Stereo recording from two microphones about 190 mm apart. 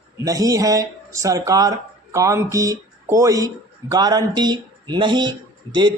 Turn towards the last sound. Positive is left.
turn(degrees=-20)  # may be behind; listen again after turning